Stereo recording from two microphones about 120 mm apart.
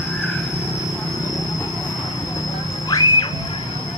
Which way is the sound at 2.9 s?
35° left (ahead or behind).